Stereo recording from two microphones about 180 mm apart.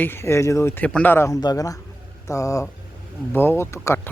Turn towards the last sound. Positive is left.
turn(degrees=15)  # may be behind; listen again after turning